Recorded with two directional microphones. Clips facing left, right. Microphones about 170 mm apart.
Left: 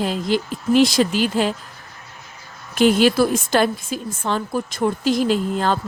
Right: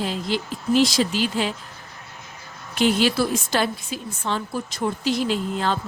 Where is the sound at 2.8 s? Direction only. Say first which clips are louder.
Left 5 dB; 50° left (ahead or behind).